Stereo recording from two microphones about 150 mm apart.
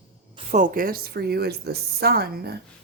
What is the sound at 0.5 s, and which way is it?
A woman's voice, 65° right (ahead or behind).